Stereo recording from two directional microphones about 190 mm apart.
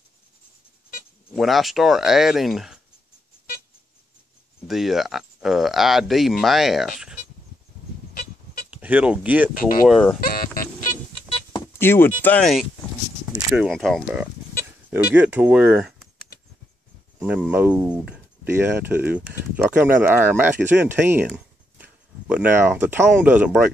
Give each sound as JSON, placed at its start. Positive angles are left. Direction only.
{"t": 1.3, "sound": "speech", "side_deg": 0}
{"t": 4.6, "sound": "speech", "side_deg": 0}
{"t": 8.6, "sound": "speech", "side_deg": -5}
{"t": 9.6, "sound": "speech", "side_deg": 50}
{"t": 10.2, "sound": "music", "side_deg": 50}
{"t": 11.5, "sound": "speech", "side_deg": 15}
{"t": 17.2, "sound": "speech", "side_deg": -5}
{"t": 21.3, "sound": "a sound", "side_deg": -5}
{"t": 23.0, "sound": "speech", "side_deg": -10}